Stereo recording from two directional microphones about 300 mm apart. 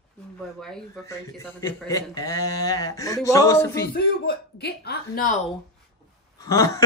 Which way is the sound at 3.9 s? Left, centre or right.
Left.